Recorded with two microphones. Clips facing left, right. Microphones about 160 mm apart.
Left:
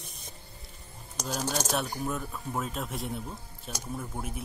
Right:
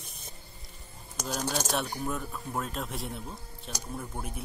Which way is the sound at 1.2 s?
5° left (ahead or behind).